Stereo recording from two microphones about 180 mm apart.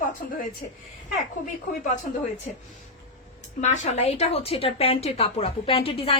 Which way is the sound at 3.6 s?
40° left (ahead or behind).